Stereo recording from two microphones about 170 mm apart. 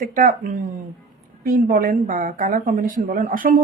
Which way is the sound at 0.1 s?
50° right (ahead or behind).